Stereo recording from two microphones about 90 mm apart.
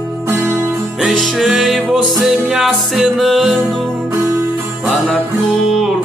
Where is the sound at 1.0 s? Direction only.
Centre (ahead or behind).